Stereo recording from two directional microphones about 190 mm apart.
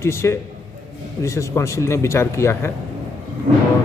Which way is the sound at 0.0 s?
15° left (ahead or behind).